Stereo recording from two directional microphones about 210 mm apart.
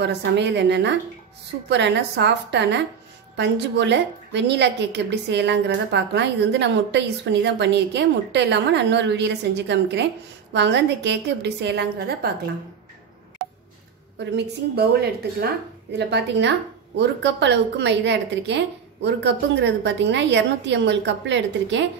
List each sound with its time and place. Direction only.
0.0 s a woman's voice: 55° right (ahead or behind)
14.3 s a woman's voice: 50° right (ahead or behind)